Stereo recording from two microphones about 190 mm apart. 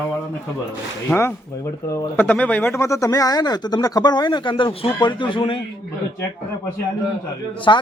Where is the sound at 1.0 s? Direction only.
10° left (ahead or behind); by 5.6 s 25° left (ahead or behind).